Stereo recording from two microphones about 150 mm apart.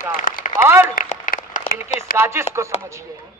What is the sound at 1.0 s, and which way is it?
Applause, 60° left (ahead or behind).